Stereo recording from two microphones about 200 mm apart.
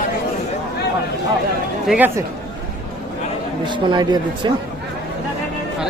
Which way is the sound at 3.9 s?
20° right (ahead or behind).